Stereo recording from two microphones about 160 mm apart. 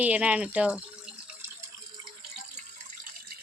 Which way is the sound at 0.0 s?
5° right (ahead or behind).